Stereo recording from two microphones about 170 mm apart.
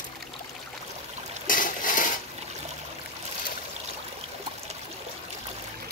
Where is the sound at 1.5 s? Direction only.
55° left (ahead or behind).